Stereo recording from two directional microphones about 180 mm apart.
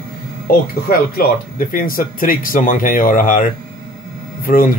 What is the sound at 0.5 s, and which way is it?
Speech, 55° left (ahead or behind).